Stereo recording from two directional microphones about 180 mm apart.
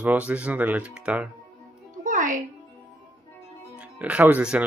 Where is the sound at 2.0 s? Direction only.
45° right (ahead or behind).